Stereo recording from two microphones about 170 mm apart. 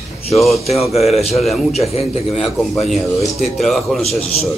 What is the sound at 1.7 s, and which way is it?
Speech, 40° left (ahead or behind).